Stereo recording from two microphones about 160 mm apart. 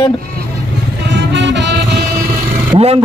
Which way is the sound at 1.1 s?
90° right.